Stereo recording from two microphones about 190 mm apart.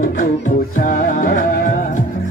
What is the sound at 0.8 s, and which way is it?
Music, 45° left (ahead or behind).